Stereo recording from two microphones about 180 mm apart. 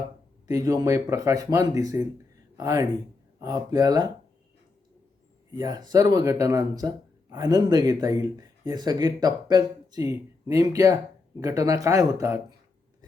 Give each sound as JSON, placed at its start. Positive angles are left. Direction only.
{"t": 0.4, "sound": "speech", "side_deg": -20}
{"t": 5.5, "sound": "speech", "side_deg": -20}